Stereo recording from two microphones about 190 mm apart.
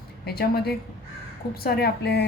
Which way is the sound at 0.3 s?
55° left (ahead or behind).